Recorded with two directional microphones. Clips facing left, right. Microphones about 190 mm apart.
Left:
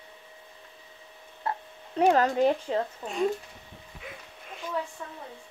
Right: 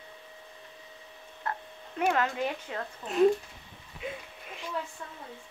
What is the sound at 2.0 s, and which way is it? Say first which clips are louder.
Speech: left 6 dB; 35° left (ahead or behind).